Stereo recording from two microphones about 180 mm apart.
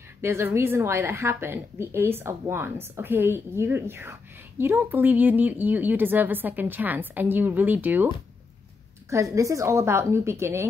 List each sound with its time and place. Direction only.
0.2 s speech: 15° right (ahead or behind)
9.1 s speech: 15° right (ahead or behind)